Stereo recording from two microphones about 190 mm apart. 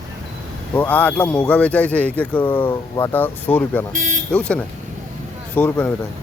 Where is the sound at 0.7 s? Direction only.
10° left (ahead or behind).